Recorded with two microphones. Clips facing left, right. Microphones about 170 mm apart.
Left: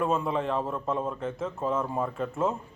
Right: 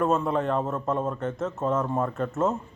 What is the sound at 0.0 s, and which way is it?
A man's voice, centre (ahead or behind).